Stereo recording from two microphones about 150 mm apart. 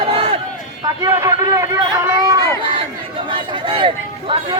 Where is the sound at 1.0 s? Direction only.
25° right (ahead or behind).